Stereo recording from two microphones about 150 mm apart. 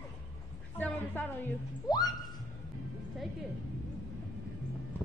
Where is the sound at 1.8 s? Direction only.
25° left (ahead or behind).